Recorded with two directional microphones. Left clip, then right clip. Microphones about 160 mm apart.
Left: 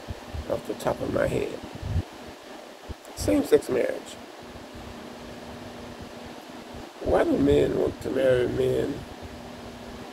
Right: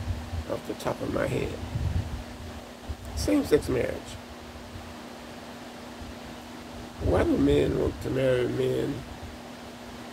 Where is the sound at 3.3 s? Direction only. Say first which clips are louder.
Left 2 dB; 15° right (ahead or behind).